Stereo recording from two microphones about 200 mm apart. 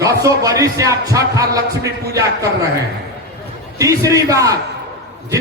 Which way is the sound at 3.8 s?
15° right (ahead or behind).